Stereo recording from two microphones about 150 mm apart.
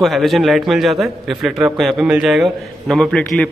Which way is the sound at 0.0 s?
Centre (ahead or behind).